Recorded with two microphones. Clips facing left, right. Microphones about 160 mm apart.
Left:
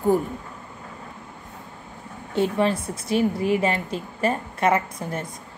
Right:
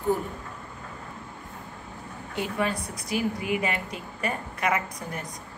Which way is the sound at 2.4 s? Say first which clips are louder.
Left 7 dB; 30° left (ahead or behind).